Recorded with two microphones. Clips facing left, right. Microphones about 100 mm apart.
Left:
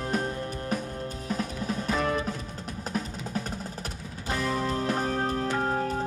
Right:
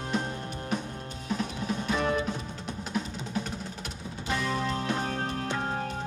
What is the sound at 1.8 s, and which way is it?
Music, 40° left (ahead or behind).